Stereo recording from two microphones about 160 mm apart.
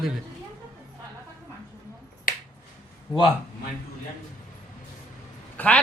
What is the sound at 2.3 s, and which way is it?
Finger snapping, 60° left (ahead or behind).